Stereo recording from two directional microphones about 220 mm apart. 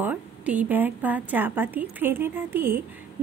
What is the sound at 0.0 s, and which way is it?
Speech, 5° right (ahead or behind).